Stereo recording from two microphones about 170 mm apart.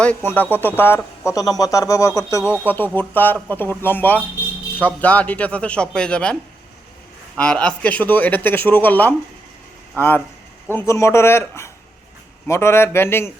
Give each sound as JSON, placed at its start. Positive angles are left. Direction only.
{"t": 0.0, "sound": "a man's voice", "side_deg": 10}
{"t": 7.3, "sound": "speech", "side_deg": 5}